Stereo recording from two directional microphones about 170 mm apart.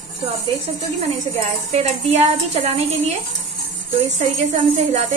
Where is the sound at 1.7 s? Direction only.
40° right (ahead or behind).